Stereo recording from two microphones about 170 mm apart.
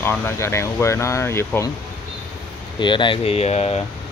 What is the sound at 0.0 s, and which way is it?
Speech, 15° left (ahead or behind).